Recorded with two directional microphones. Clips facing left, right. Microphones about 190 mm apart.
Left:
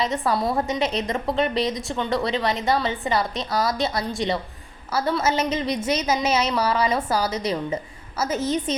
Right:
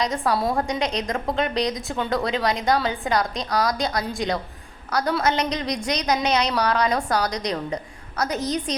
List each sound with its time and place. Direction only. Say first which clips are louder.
0.0 s a woman's voice: even; centre (ahead or behind)